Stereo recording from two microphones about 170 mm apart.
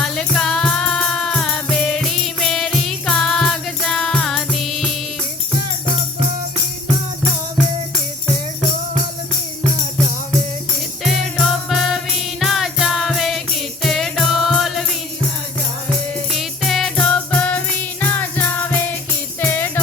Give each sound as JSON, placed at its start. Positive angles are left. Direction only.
{"t": 0.0, "sound": "music", "side_deg": 5}
{"t": 11.0, "sound": "music", "side_deg": 0}
{"t": 16.3, "sound": "music", "side_deg": 0}